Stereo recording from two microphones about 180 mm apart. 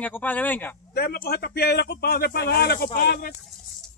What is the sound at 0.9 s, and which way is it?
Speech, 60° left (ahead or behind).